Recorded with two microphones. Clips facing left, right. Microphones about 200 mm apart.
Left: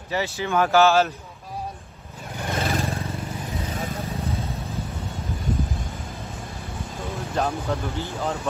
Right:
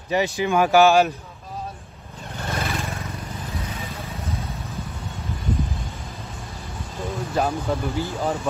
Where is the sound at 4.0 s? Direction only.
30° left (ahead or behind).